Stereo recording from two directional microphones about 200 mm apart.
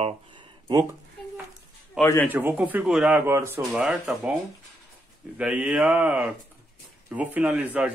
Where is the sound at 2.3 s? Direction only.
10° right (ahead or behind).